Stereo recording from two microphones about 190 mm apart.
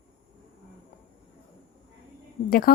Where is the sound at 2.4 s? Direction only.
50° left (ahead or behind).